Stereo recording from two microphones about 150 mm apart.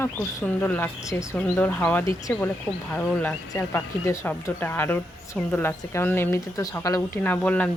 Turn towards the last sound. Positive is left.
turn(degrees=10)  # may be behind; listen again after turning